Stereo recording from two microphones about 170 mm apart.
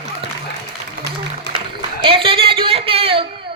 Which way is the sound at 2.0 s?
30° right (ahead or behind).